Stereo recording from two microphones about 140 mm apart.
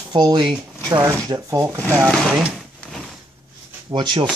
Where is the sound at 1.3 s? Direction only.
20° right (ahead or behind).